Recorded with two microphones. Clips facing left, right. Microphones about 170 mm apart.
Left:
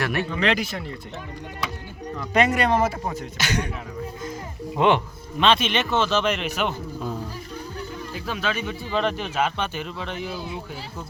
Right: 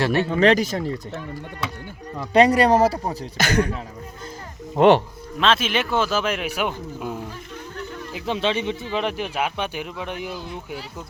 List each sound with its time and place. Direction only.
0.0 s speech: 30° right (ahead or behind)
0.3 s speech: 40° right (ahead or behind)
2.3 s speech: 35° right (ahead or behind)
4.7 s speech: 35° right (ahead or behind)
5.4 s speech: centre (ahead or behind)
8.1 s speech: 25° right (ahead or behind)
10.3 s speech: 10° left (ahead or behind)